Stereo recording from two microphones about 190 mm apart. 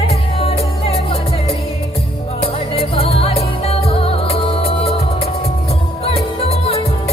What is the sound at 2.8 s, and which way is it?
Music, 30° left (ahead or behind).